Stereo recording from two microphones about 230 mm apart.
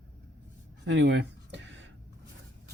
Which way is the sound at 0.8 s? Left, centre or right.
Right.